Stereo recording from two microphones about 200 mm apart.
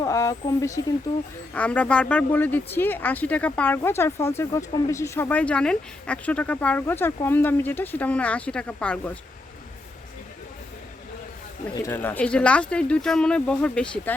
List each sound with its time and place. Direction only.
0.0 s speech: 15° left (ahead or behind)
11.7 s speech: 15° left (ahead or behind)